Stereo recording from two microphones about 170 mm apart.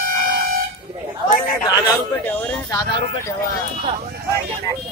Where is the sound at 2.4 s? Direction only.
20° left (ahead or behind).